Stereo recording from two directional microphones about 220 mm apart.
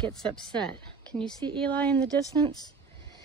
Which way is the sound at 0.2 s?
5° left (ahead or behind).